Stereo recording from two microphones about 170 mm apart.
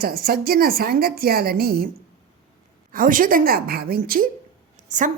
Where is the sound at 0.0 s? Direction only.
60° right (ahead or behind).